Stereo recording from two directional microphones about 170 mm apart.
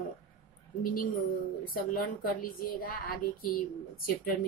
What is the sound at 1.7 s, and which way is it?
A woman's voice, 60° left (ahead or behind).